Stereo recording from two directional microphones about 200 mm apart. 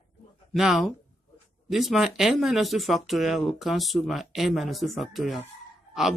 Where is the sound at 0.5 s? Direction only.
Centre (ahead or behind).